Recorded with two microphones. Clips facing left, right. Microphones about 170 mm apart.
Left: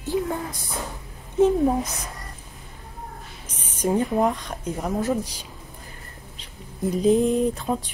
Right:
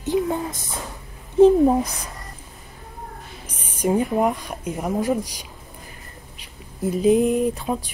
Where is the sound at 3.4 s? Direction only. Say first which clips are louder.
Right 2 dB; 10° right (ahead or behind).